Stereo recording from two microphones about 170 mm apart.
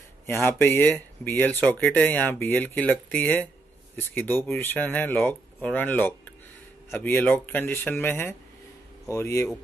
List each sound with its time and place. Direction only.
0.3 s speech: 15° left (ahead or behind)